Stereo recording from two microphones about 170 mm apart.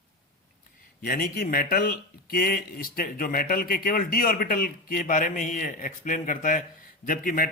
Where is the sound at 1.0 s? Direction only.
60° left (ahead or behind).